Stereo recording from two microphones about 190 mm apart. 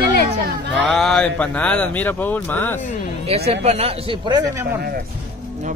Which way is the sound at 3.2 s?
30° right (ahead or behind).